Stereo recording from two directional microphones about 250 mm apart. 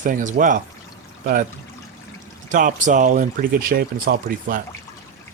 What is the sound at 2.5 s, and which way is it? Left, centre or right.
Speech, right.